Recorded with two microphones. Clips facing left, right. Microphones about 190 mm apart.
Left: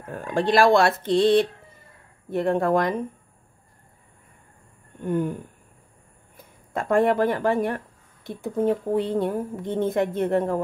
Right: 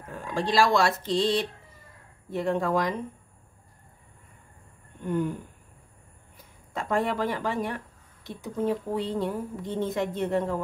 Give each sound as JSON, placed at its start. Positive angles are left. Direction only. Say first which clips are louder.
{"t": 0.1, "sound": "speech", "louder": "left 5 dB", "side_deg": 55}
{"t": 5.0, "sound": "speech", "louder": "left 3 dB", "side_deg": 50}
{"t": 6.3, "sound": "speech", "louder": "left 5 dB", "side_deg": 55}